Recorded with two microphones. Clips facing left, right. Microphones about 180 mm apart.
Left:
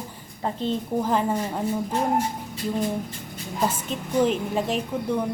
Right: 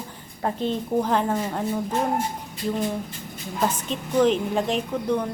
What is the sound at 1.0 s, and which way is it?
Speech, 5° left (ahead or behind).